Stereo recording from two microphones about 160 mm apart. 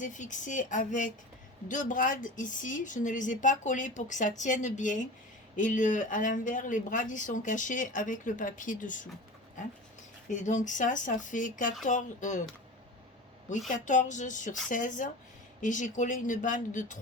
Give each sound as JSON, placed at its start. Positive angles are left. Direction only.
{"t": 0.0, "sound": "speech", "side_deg": 50}
{"t": 10.4, "sound": "speech", "side_deg": 50}
{"t": 13.7, "sound": "speech", "side_deg": 50}